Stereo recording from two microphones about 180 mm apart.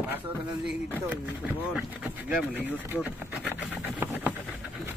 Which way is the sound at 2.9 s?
10° right (ahead or behind).